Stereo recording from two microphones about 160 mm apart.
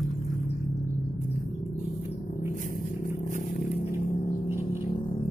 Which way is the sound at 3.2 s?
50° left (ahead or behind).